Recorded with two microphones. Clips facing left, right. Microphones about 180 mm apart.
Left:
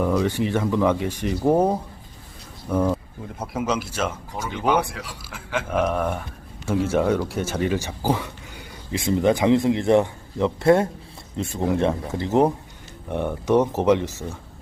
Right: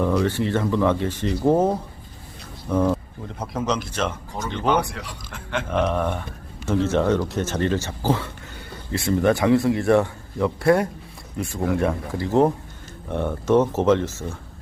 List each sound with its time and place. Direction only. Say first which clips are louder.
0.0 s speech: even; 10° left (ahead or behind)